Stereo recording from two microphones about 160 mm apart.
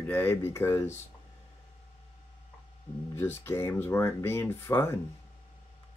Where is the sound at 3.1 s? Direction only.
15° left (ahead or behind).